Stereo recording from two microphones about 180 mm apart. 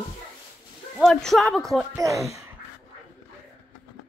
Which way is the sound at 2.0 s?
20° right (ahead or behind).